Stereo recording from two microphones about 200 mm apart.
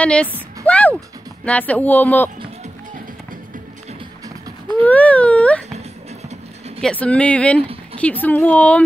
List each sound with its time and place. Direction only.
0.0 s speech: 5° left (ahead or behind)
0.7 s music: 5° left (ahead or behind)
1.4 s speech: 5° left (ahead or behind)
4.8 s speech: 5° left (ahead or behind)
6.8 s speech: 5° left (ahead or behind)